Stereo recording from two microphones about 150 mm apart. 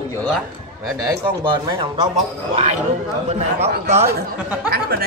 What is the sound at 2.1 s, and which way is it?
A man's voice, 50° right (ahead or behind).